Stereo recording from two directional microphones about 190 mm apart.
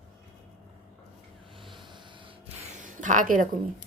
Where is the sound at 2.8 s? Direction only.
40° right (ahead or behind).